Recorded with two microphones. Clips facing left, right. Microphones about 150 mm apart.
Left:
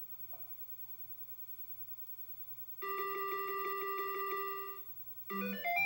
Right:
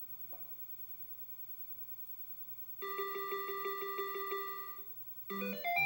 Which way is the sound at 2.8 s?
25° right (ahead or behind).